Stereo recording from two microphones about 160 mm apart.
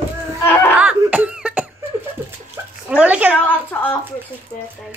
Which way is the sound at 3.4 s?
10° left (ahead or behind).